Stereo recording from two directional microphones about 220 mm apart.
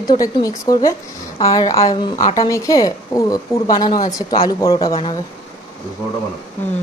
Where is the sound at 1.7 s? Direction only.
25° left (ahead or behind).